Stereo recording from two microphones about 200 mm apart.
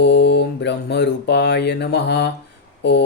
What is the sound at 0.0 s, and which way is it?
Mantra, 60° left (ahead or behind).